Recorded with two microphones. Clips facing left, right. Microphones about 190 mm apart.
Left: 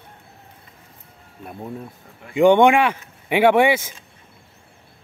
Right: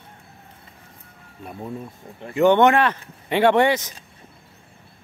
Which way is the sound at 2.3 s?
15° left (ahead or behind).